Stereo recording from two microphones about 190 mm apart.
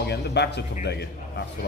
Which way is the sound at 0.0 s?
60° left (ahead or behind).